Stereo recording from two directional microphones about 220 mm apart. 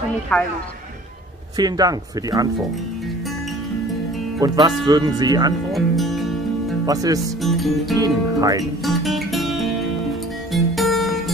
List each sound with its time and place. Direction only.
0.3 s speech: 5° left (ahead or behind)
1.6 s speech: 15° right (ahead or behind)
4.4 s speech: 20° right (ahead or behind)
5.7 s speech: centre (ahead or behind)
6.9 s speech: 15° right (ahead or behind)
7.3 s speech: centre (ahead or behind)
8.0 s speech: 15° right (ahead or behind)
8.8 s music: centre (ahead or behind)